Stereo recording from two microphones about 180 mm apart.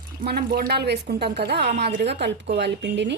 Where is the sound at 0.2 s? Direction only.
55° right (ahead or behind); by 3.2 s 75° right (ahead or behind).